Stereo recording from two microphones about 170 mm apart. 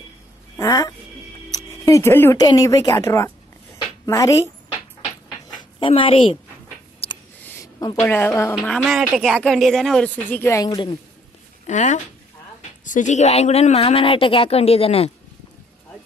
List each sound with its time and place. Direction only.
0.6 s speech: 20° left (ahead or behind)
1.5 s music: 20° left (ahead or behind)
2.4 s a woman's voice: 20° left (ahead or behind)
5.6 s speech: 30° left (ahead or behind)
7.0 s a sound: 35° left (ahead or behind)
7.4 s a woman's voice: 20° left (ahead or behind)
11.6 s a woman's voice: 45° left (ahead or behind)